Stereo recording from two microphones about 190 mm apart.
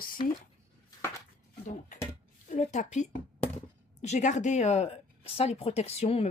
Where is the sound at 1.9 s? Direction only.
40° left (ahead or behind).